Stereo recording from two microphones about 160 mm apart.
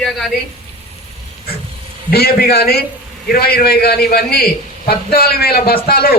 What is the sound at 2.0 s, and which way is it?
A man's voice, 75° left (ahead or behind).